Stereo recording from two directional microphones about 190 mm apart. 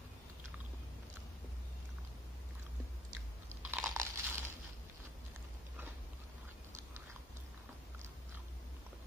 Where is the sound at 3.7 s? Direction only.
10° right (ahead or behind).